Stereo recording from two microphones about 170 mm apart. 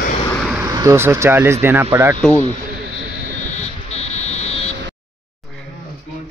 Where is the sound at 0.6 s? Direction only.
20° right (ahead or behind).